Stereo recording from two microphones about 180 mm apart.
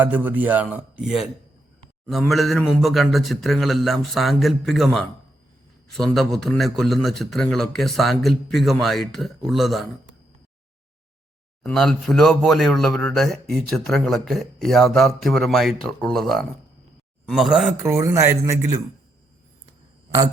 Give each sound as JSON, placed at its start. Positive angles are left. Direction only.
{"t": 0.0, "sound": "a man's voice", "side_deg": -10}
{"t": 2.3, "sound": "speech", "side_deg": 0}
{"t": 11.6, "sound": "speech", "side_deg": 0}
{"t": 17.8, "sound": "a man's voice", "side_deg": -15}